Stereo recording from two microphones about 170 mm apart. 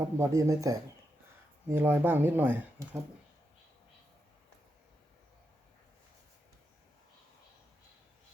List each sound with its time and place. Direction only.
0.0 s speech: 20° right (ahead or behind)